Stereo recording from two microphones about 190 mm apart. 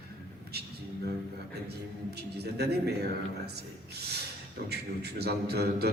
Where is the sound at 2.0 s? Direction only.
60° right (ahead or behind).